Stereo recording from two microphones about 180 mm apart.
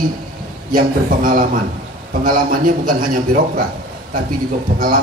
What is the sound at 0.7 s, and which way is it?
A man's voice, 50° right (ahead or behind).